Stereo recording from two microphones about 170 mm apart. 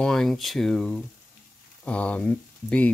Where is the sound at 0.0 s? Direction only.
Centre (ahead or behind).